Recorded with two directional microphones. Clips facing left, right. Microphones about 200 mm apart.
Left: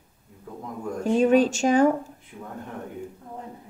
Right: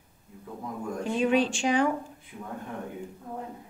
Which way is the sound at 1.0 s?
45° left (ahead or behind).